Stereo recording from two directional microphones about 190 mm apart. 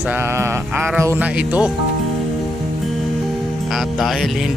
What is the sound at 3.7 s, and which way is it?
Speech, centre (ahead or behind).